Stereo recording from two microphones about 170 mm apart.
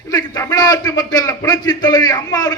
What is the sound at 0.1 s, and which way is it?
A man's voice, 20° left (ahead or behind).